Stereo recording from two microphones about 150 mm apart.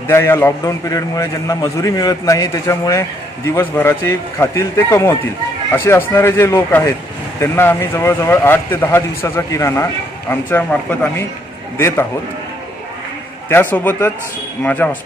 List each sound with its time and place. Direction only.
0.1 s a man's voice: 15° left (ahead or behind)
13.5 s speech: 10° left (ahead or behind)